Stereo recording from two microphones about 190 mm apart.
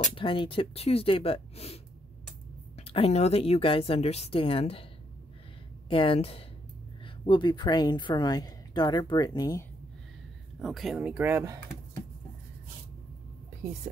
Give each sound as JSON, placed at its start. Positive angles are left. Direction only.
{"t": 0.1, "sound": "a woman's voice", "side_deg": 25}
{"t": 5.9, "sound": "a woman's voice", "side_deg": 30}
{"t": 10.6, "sound": "speech", "side_deg": 0}